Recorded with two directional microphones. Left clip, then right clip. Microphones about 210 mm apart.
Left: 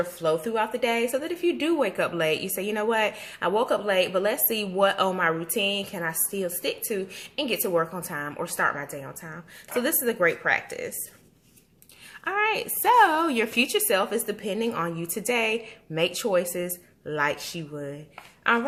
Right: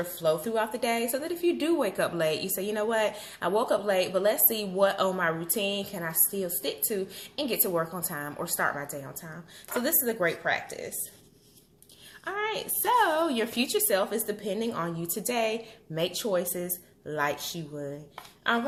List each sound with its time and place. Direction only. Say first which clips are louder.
0.0 s a woman's voice: left 2 dB; 15° left (ahead or behind)
12.2 s a woman's voice: left 6 dB; 25° left (ahead or behind)